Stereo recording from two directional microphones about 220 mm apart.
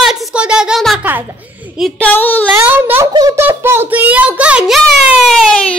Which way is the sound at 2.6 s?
10° right (ahead or behind).